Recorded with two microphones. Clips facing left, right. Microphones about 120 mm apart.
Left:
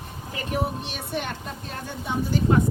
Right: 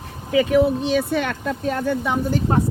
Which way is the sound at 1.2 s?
70° right (ahead or behind).